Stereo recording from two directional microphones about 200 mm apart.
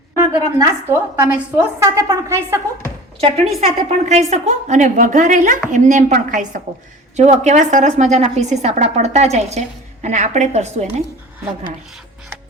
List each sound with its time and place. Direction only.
0.2 s a woman's voice: 10° right (ahead or behind)
3.2 s a woman's voice: 30° right (ahead or behind)